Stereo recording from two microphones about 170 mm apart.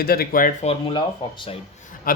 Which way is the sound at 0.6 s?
30° left (ahead or behind).